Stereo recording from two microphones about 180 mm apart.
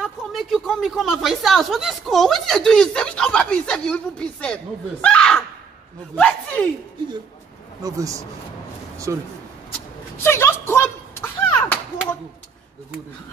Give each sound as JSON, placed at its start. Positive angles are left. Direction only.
{"t": 0.0, "sound": "speech", "side_deg": 0}
{"t": 7.8, "sound": "speech", "side_deg": -20}
{"t": 10.2, "sound": "a sound", "side_deg": 15}